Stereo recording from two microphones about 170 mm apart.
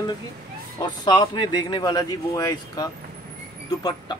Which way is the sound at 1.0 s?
25° left (ahead or behind).